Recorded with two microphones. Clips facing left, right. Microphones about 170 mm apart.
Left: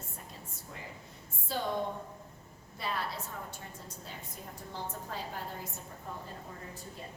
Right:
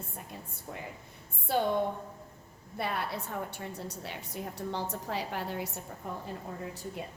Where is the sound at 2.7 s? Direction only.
60° right (ahead or behind).